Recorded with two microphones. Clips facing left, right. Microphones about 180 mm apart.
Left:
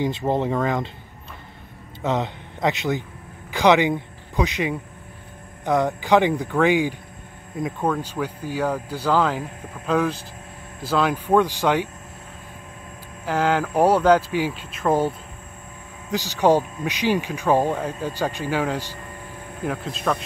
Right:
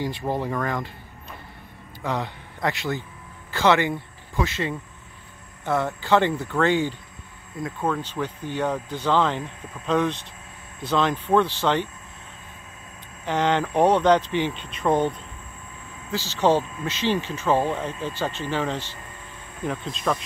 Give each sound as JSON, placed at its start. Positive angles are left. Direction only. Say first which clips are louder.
{"t": 0.0, "sound": "speech", "louder": "left 4 dB", "side_deg": 20}
{"t": 2.0, "sound": "speech", "louder": "left 4 dB", "side_deg": 20}
{"t": 13.2, "sound": "speech", "louder": "left 1 dB", "side_deg": 5}
{"t": 16.1, "sound": "speech", "louder": "left 3 dB", "side_deg": 15}